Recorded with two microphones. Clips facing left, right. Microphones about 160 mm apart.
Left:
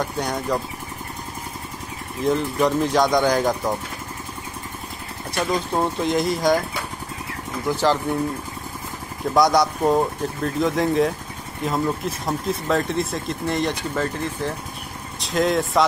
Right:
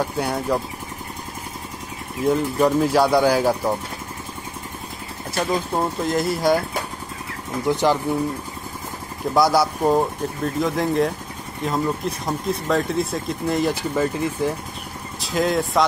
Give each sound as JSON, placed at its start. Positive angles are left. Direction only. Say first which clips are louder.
{"t": 0.0, "sound": "speech", "louder": "right 2 dB", "side_deg": -5}
{"t": 2.2, "sound": "speech", "louder": "right 2 dB", "side_deg": -5}
{"t": 5.5, "sound": "speech", "louder": "left 1 dB", "side_deg": 0}
{"t": 7.6, "sound": "speech", "louder": "right 1 dB", "side_deg": -15}
{"t": 9.3, "sound": "speech", "louder": "even", "side_deg": -5}